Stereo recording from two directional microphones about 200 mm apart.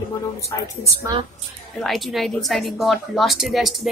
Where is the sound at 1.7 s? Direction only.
Centre (ahead or behind).